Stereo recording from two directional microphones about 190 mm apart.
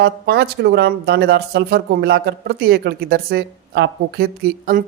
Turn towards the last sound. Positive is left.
turn(degrees=-50)  # may be behind; listen again after turning